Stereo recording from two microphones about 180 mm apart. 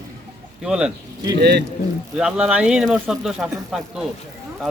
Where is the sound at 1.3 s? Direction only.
65° right (ahead or behind).